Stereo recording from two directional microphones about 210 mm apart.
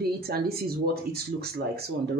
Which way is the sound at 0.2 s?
50° right (ahead or behind).